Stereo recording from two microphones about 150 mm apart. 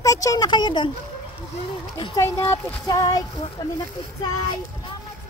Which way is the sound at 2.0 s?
25° left (ahead or behind).